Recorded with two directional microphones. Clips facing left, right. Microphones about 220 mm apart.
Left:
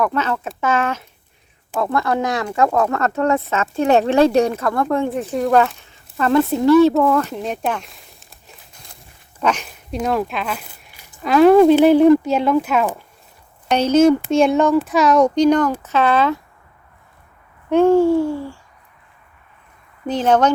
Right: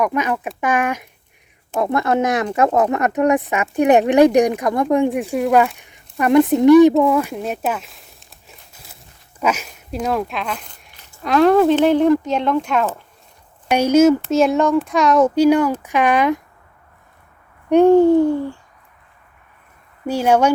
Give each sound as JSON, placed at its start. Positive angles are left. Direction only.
{"t": 0.0, "sound": "speech", "side_deg": -15}
{"t": 13.7, "sound": "speech", "side_deg": -10}
{"t": 17.7, "sound": "a child's voice", "side_deg": -15}
{"t": 20.1, "sound": "speech", "side_deg": -10}